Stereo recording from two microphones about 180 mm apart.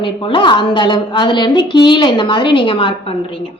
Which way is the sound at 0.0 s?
25° left (ahead or behind).